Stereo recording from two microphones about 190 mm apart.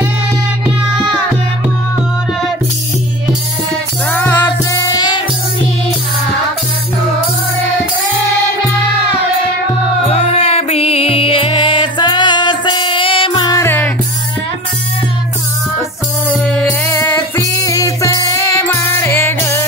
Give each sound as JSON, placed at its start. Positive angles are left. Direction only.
{"t": 4.1, "sound": "music", "side_deg": 10}
{"t": 4.9, "sound": "music", "side_deg": 25}
{"t": 10.0, "sound": "music", "side_deg": 35}
{"t": 16.4, "sound": "music", "side_deg": 5}